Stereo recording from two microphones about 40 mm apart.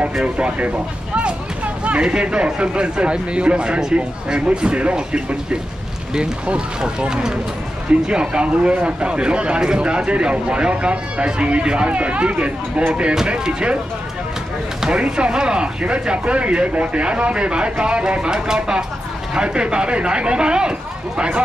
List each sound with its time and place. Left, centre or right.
0.2 s speech: right
13.3 s speech: right
14.8 s speech: centre